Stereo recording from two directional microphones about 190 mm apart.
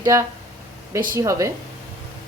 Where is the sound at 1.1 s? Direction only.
15° right (ahead or behind).